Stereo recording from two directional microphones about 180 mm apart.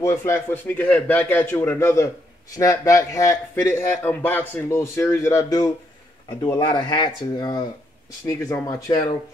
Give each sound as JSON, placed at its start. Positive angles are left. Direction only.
{"t": 0.0, "sound": "a man's voice", "side_deg": 15}